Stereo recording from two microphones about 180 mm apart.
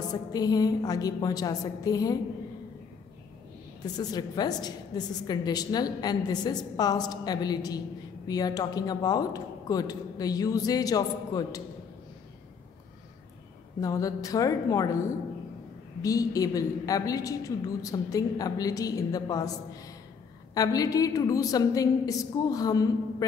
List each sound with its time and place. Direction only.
0.1 s a woman's voice: 20° left (ahead or behind)
3.8 s a woman's voice: 20° left (ahead or behind)
13.7 s a woman's voice: 20° left (ahead or behind)
16.0 s a woman's voice: 20° left (ahead or behind)